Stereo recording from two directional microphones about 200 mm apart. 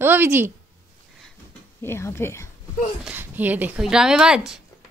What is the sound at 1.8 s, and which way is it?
Speech, 10° left (ahead or behind).